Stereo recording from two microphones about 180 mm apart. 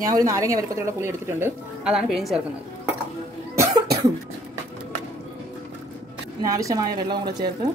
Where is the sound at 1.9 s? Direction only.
Centre (ahead or behind).